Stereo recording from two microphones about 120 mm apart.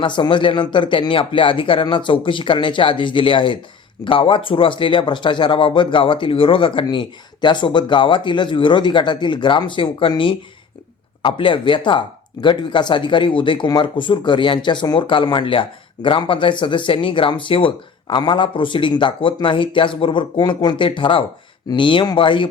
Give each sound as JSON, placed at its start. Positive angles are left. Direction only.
{"t": 0.0, "sound": "speech", "side_deg": 40}